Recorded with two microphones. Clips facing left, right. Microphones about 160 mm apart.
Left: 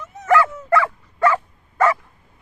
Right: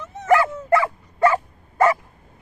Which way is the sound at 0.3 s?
20° right (ahead or behind).